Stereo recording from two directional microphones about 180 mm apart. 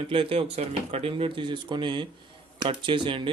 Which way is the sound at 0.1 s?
30° right (ahead or behind).